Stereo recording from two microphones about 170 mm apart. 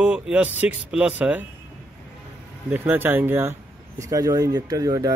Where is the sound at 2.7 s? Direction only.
10° right (ahead or behind).